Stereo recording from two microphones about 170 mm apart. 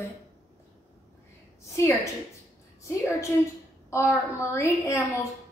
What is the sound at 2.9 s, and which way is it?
A woman's voice, 15° left (ahead or behind).